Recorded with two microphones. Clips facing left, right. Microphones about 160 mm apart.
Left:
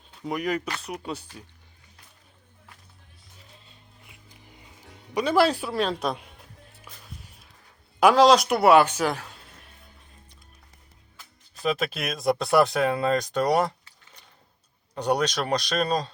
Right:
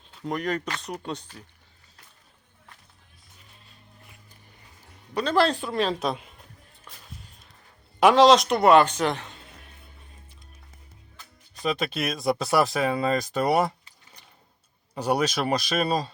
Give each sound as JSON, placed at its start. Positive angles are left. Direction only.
{"t": 0.2, "sound": "speech", "side_deg": 10}
{"t": 3.7, "sound": "music", "side_deg": 15}
{"t": 5.1, "sound": "speech", "side_deg": 10}
{"t": 7.9, "sound": "speech", "side_deg": 0}
{"t": 11.5, "sound": "speech", "side_deg": 0}
{"t": 14.9, "sound": "speech", "side_deg": -5}